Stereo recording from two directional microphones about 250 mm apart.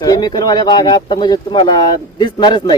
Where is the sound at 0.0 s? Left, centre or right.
Centre.